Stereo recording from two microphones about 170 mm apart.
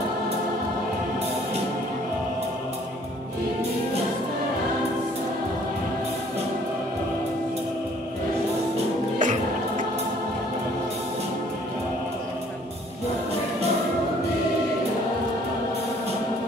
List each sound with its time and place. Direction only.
9.2 s music: 45° right (ahead or behind)